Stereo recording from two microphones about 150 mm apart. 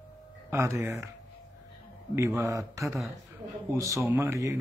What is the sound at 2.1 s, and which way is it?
Speech, 20° right (ahead or behind).